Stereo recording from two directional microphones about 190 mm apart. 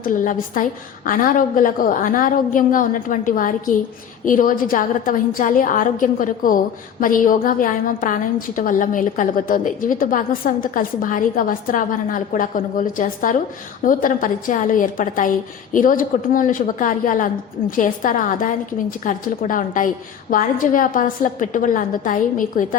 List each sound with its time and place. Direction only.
0.0 s a woman's voice: 45° left (ahead or behind)